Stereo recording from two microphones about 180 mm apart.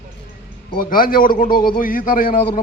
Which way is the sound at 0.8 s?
50° left (ahead or behind).